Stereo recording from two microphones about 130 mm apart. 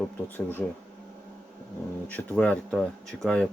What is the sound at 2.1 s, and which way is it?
Speech, 10° left (ahead or behind).